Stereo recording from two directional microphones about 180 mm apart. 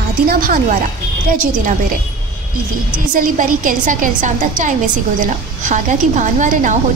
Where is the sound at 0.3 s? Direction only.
50° right (ahead or behind).